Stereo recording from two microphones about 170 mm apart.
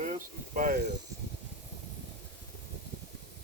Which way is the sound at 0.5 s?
50° right (ahead or behind).